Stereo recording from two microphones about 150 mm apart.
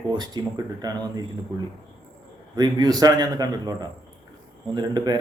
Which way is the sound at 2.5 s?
25° right (ahead or behind).